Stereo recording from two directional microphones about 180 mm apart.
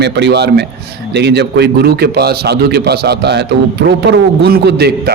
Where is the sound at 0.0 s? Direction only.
70° right (ahead or behind).